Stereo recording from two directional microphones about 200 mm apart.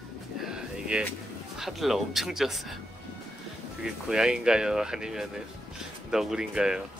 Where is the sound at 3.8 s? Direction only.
5° right (ahead or behind).